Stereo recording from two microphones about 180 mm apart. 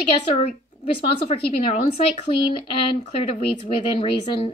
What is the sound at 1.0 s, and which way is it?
A woman's voice, 30° left (ahead or behind).